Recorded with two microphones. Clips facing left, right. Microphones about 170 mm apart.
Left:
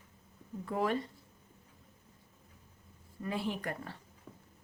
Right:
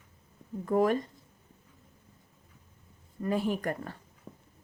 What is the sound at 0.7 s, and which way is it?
Speech, 45° right (ahead or behind).